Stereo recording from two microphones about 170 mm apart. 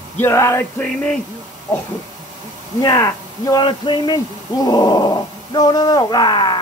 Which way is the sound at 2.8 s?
20° left (ahead or behind).